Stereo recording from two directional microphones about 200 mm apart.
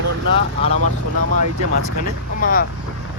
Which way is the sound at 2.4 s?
45° left (ahead or behind).